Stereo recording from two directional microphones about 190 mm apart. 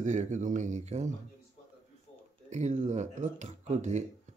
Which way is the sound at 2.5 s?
35° right (ahead or behind).